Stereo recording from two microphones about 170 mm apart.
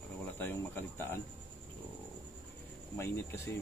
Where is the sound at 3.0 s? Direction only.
15° left (ahead or behind).